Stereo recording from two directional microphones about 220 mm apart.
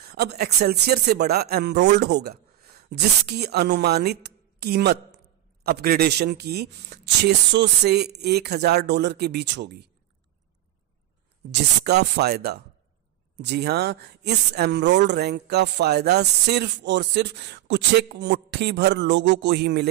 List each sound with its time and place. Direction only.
0.0 s speech: 45° right (ahead or behind)
11.5 s speech: 50° right (ahead or behind)